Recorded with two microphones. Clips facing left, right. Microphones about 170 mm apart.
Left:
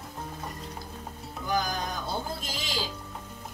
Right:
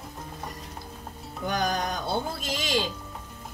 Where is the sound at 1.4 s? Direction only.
70° right (ahead or behind).